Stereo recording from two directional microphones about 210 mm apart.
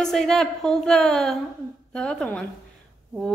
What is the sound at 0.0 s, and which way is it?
Speech, centre (ahead or behind).